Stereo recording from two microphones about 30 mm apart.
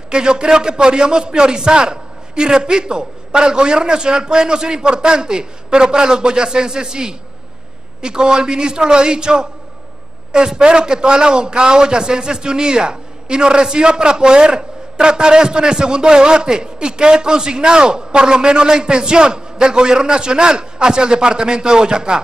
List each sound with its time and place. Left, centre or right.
0.1 s a man's voice: right